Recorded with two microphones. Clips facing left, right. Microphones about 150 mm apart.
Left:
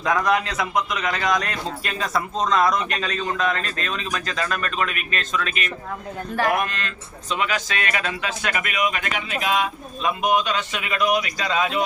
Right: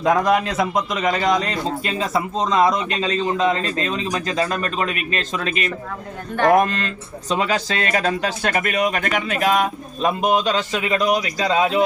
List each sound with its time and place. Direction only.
0.0 s speech: 25° right (ahead or behind)